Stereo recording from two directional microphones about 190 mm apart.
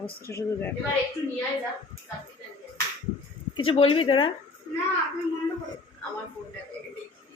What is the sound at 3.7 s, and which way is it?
Speech, 30° left (ahead or behind).